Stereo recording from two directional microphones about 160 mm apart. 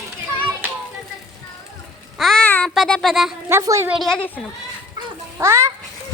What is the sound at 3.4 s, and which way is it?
Speech, 15° right (ahead or behind).